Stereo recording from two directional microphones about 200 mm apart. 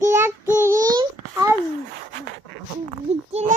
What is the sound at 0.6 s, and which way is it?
Babbling, 15° right (ahead or behind).